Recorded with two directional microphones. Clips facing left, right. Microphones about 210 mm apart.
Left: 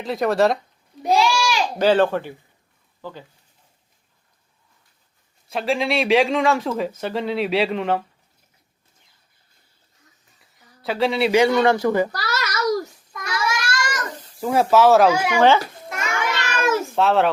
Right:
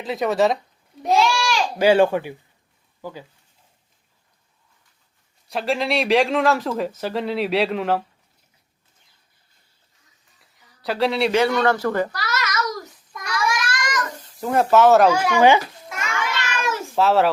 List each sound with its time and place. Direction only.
0.0 s speech: centre (ahead or behind)
1.0 s a sound: centre (ahead or behind)
1.8 s speech: 10° right (ahead or behind)
5.5 s speech: centre (ahead or behind)
10.8 s speech: centre (ahead or behind)
11.3 s speech: 15° left (ahead or behind)
12.1 s a sound: 35° left (ahead or behind)
13.3 s child singing: 25° left (ahead or behind)
14.4 s speech: centre (ahead or behind)
15.4 s speech: 15° right (ahead or behind)
16.0 s child singing: 45° left (ahead or behind)
16.9 s speech: centre (ahead or behind)